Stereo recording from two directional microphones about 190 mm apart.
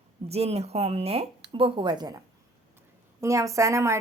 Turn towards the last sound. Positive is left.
turn(degrees=-15)  # may be behind; listen again after turning